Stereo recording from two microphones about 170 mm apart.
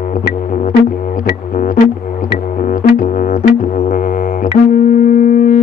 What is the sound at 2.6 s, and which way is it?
Music, 55° left (ahead or behind).